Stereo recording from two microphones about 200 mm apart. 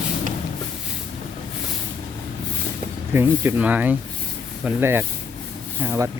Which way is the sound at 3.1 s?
10° right (ahead or behind).